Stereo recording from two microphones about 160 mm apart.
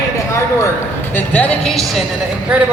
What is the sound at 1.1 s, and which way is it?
Speech, 10° left (ahead or behind).